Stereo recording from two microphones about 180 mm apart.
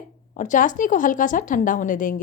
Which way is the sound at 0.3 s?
45° left (ahead or behind).